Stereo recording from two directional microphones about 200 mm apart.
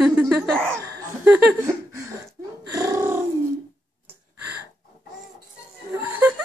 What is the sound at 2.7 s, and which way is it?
Purr, 15° right (ahead or behind).